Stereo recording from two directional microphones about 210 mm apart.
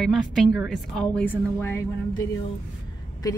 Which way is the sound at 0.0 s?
Centre (ahead or behind).